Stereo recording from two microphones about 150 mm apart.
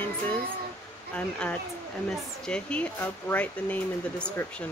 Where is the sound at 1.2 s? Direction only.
10° left (ahead or behind).